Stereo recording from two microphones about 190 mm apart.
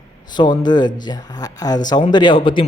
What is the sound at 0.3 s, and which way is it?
Speech, 20° left (ahead or behind).